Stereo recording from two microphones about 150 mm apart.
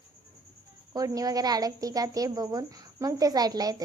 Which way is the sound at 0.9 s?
25° right (ahead or behind).